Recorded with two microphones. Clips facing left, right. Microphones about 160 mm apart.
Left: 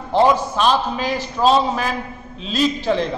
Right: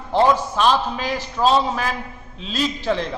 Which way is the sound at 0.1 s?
15° left (ahead or behind).